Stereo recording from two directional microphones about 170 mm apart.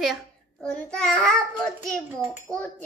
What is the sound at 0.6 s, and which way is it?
Child singing, 5° left (ahead or behind).